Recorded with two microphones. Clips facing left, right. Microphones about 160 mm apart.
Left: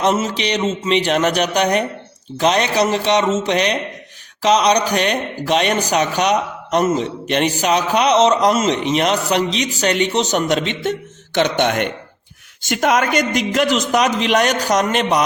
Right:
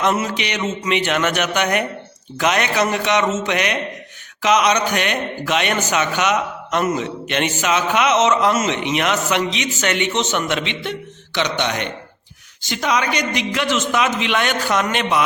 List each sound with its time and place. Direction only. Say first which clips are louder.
0.0 s a man's voice: left 2 dB; 30° left (ahead or behind)